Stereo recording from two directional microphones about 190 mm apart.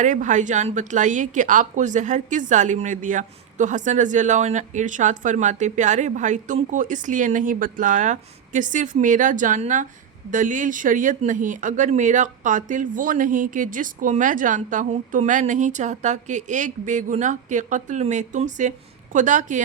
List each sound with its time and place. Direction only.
0.0 s a woman's voice: 40° right (ahead or behind)